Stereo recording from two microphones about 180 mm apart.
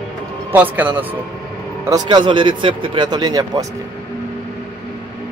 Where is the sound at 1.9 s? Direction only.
25° right (ahead or behind).